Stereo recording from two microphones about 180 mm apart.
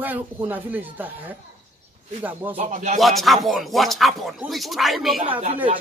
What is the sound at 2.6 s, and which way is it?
Speech, 40° right (ahead or behind).